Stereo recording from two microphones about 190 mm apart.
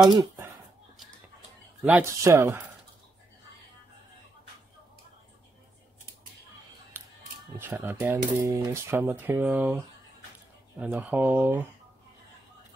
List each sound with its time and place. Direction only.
0.1 s speech: 20° right (ahead or behind)
1.8 s speech: 5° right (ahead or behind)
7.5 s speech: 10° right (ahead or behind)